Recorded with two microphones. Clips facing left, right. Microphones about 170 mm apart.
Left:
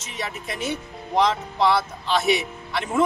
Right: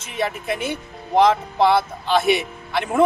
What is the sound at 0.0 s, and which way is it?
Speech, 55° right (ahead or behind).